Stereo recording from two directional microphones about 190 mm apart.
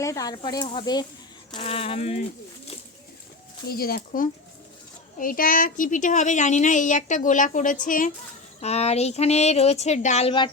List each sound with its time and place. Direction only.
0.0 s speech: 15° left (ahead or behind); by 2.2 s 35° left (ahead or behind)
3.7 s a woman's voice: 50° left (ahead or behind)
8.6 s speech: 35° left (ahead or behind)